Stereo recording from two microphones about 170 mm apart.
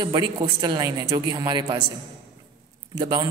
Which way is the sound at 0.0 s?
25° right (ahead or behind).